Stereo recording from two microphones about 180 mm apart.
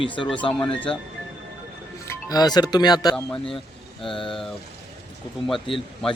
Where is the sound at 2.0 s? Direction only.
15° left (ahead or behind).